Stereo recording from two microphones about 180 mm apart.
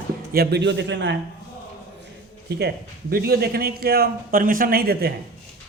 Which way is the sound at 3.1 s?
60° right (ahead or behind).